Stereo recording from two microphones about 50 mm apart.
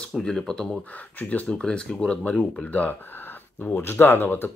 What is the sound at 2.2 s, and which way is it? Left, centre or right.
Speech, left.